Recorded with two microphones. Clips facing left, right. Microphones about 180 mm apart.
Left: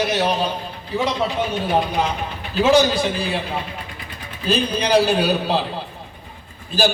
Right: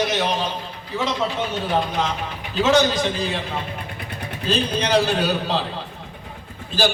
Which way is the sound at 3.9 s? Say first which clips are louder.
Right 4 dB; 65° right (ahead or behind).